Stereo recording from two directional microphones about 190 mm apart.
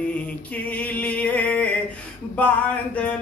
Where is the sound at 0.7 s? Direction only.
5° left (ahead or behind).